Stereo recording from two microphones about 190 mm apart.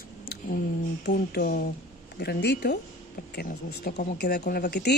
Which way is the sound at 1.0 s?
55° left (ahead or behind).